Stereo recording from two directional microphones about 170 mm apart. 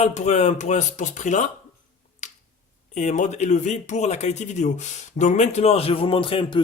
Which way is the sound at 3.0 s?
45° left (ahead or behind).